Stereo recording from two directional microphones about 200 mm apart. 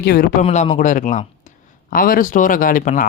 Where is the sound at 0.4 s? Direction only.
35° left (ahead or behind).